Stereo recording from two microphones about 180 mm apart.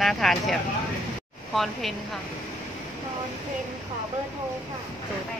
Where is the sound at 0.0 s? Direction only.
Centre (ahead or behind).